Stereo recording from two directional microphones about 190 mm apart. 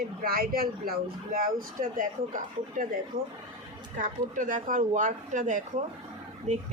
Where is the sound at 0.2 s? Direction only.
50° right (ahead or behind).